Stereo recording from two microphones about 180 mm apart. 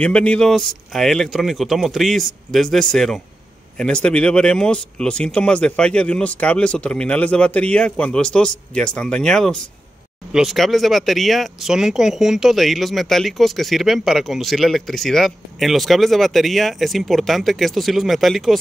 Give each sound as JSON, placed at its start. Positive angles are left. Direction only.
{"t": 0.0, "sound": "speech", "side_deg": 5}